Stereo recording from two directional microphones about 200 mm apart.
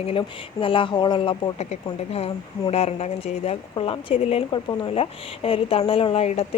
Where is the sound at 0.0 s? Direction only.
25° left (ahead or behind).